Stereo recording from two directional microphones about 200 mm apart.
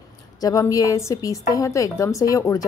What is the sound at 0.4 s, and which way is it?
A woman's voice, 15° left (ahead or behind).